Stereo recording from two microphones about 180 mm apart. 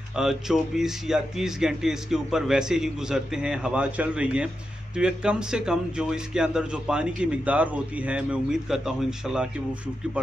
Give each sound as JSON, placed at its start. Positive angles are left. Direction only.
{"t": 0.1, "sound": "a man's voice", "side_deg": -5}